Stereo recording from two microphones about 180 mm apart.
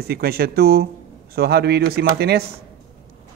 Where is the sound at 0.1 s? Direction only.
60° right (ahead or behind).